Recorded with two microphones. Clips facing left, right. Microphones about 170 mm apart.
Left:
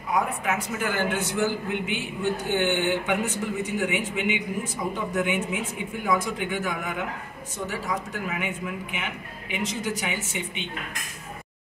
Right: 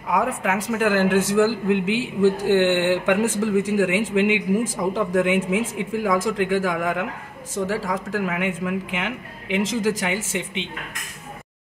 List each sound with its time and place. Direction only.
0.1 s a man's voice: 90° right